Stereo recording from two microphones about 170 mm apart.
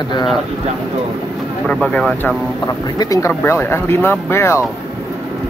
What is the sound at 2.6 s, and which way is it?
Speech, 20° left (ahead or behind).